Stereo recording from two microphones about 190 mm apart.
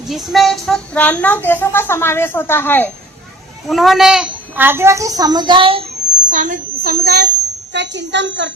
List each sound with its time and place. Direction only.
0.1 s a woman's voice: centre (ahead or behind)
3.7 s a child's voice: centre (ahead or behind); by 5.8 s 25° right (ahead or behind)
6.2 s a woman's voice: 40° right (ahead or behind)
7.7 s a woman's voice: 65° right (ahead or behind)